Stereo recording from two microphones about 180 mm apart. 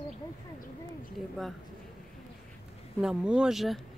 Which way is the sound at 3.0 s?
5° right (ahead or behind).